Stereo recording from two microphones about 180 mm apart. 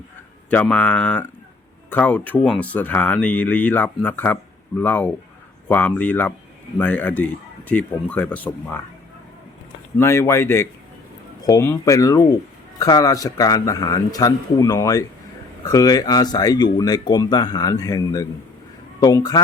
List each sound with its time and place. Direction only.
0.5 s speech: 5° left (ahead or behind)
10.0 s speech: 15° left (ahead or behind)